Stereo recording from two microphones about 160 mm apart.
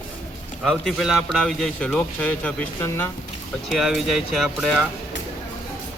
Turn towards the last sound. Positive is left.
turn(degrees=0)  # may be behind; listen again after turning